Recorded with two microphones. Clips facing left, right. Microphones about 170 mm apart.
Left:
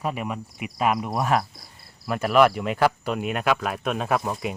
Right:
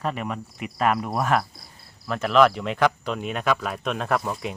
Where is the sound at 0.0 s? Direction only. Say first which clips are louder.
Even; 10° left (ahead or behind).